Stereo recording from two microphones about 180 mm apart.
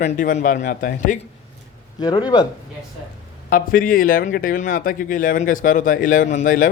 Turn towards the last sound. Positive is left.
turn(degrees=45)  # may be behind; listen again after turning